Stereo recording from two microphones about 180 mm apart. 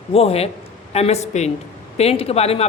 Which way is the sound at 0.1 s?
35° left (ahead or behind).